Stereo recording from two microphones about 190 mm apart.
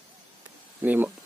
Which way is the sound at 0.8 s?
10° right (ahead or behind).